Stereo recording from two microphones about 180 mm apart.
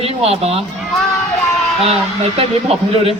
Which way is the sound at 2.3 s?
35° right (ahead or behind).